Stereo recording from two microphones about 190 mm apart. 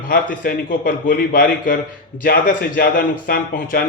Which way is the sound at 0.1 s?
50° left (ahead or behind).